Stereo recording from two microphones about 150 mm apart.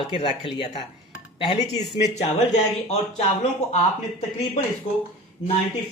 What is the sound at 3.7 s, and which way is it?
Speech, 45° left (ahead or behind).